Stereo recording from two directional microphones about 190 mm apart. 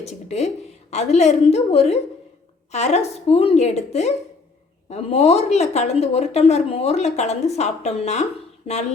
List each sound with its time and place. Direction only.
0.0 s speech: 35° left (ahead or behind)